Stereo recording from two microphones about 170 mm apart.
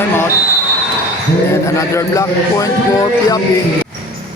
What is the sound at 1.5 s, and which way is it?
Speech, 15° left (ahead or behind).